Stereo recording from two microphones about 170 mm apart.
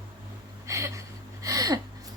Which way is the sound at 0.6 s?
15° right (ahead or behind).